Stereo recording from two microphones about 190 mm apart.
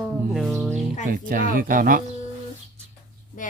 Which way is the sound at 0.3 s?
Centre (ahead or behind).